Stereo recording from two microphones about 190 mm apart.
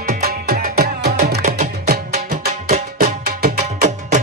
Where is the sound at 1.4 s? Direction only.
45° right (ahead or behind).